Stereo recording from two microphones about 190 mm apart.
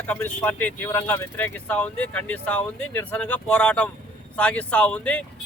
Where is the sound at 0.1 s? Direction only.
10° left (ahead or behind).